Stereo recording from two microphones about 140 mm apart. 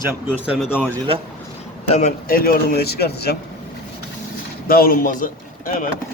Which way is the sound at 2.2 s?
90° left.